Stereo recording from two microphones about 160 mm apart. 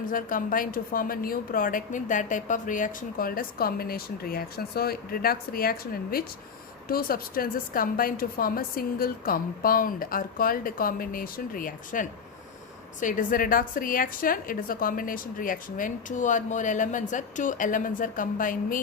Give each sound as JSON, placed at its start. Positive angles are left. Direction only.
{"t": 0.0, "sound": "a woman's voice", "side_deg": 60}